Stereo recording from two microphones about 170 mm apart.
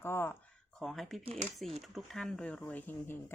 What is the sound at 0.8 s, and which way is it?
A woman's voice, centre (ahead or behind).